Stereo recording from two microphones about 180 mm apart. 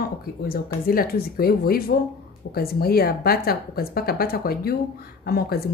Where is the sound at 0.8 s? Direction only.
55° left (ahead or behind).